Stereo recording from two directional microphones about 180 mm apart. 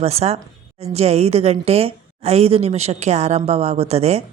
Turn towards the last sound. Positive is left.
turn(degrees=-35)  # may be behind; listen again after turning